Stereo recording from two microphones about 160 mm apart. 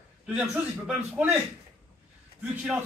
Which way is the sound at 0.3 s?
5° right (ahead or behind).